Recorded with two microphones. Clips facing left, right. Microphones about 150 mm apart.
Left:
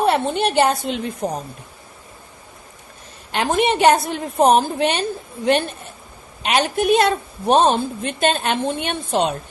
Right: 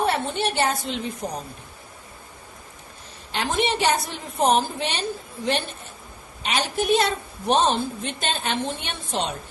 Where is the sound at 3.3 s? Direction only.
55° left (ahead or behind).